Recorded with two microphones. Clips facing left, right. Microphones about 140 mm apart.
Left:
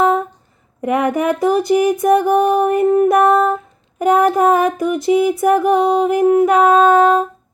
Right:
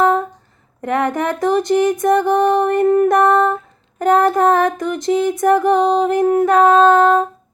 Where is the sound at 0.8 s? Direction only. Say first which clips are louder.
Left 2 dB; 10° left (ahead or behind).